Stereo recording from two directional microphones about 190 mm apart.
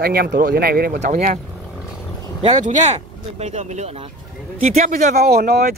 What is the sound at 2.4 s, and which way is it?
Speech, 40° right (ahead or behind).